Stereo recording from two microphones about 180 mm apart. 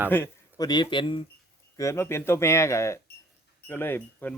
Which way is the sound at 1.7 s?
15° left (ahead or behind).